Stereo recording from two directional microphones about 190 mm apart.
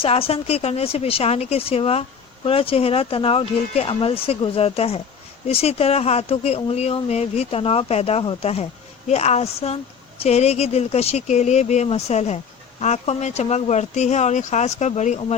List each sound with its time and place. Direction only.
0.0 s speech: 30° left (ahead or behind)